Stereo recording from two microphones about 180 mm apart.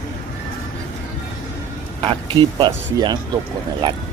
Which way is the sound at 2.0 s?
25° right (ahead or behind).